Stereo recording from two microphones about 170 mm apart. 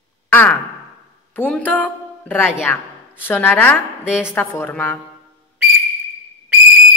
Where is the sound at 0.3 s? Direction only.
10° left (ahead or behind).